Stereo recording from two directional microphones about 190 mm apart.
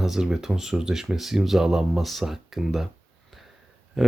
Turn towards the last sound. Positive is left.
turn(degrees=0)  # may be behind; listen again after turning